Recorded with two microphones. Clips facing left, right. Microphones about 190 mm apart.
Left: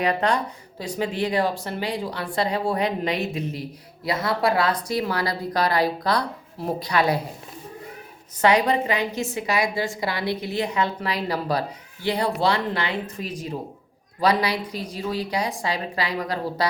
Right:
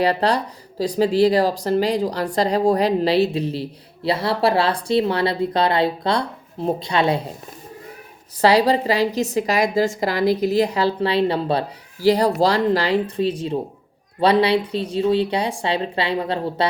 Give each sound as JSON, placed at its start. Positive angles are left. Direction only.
{"t": 0.0, "sound": "speech", "side_deg": -35}
{"t": 8.4, "sound": "speech", "side_deg": -35}
{"t": 12.0, "sound": "a woman's voice", "side_deg": -40}